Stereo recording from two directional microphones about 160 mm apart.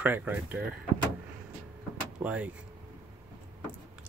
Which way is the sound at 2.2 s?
10° right (ahead or behind).